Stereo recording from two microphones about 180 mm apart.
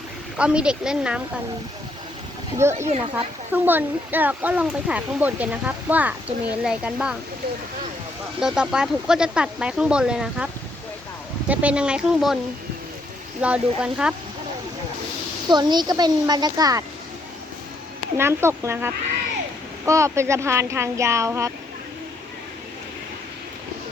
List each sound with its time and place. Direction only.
0.3 s speech: 5° right (ahead or behind)
2.7 s speech: 40° right (ahead or behind)
3.5 s speech: 10° right (ahead or behind)
8.4 s speech: 5° right (ahead or behind)
13.4 s speech: 5° right (ahead or behind)
15.4 s a woman's voice: 25° right (ahead or behind)
18.2 s speech: 15° right (ahead or behind)